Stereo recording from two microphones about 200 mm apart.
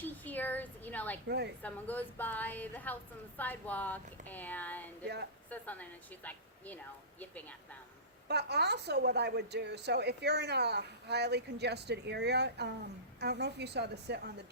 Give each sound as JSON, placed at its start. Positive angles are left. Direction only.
{"t": 0.0, "sound": "a sound", "side_deg": 10}
{"t": 1.6, "sound": "a woman's voice", "side_deg": 10}
{"t": 8.3, "sound": "a woman's voice", "side_deg": -55}